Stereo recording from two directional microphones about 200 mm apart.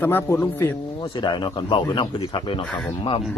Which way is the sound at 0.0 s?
10° left (ahead or behind).